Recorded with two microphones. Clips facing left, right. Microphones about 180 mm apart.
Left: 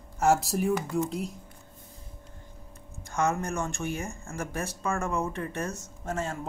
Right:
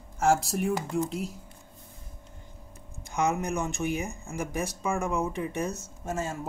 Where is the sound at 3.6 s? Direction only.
15° right (ahead or behind).